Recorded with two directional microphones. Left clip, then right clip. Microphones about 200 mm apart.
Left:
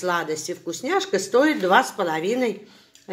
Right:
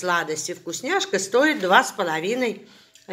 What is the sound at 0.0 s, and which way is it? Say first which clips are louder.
A woman's voice: right 1 dB; 5° left (ahead or behind).